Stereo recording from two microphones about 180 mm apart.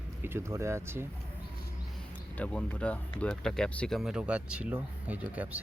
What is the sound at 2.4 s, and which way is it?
Speech, 5° left (ahead or behind).